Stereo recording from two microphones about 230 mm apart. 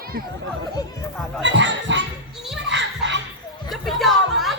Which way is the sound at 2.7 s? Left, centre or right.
Right.